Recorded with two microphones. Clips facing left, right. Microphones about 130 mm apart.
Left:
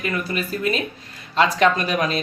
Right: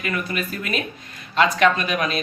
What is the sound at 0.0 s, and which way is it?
Speech, 30° left (ahead or behind).